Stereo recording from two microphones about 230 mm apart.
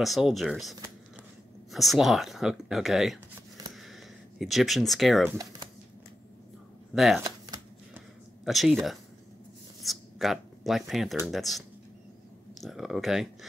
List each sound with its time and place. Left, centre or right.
0.0 s speech: centre
6.9 s speech: centre
7.2 s shuffling cards: centre
8.5 s speech: centre
9.8 s speech: centre